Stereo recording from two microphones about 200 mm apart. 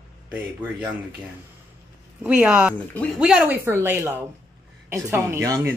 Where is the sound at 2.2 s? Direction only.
5° right (ahead or behind).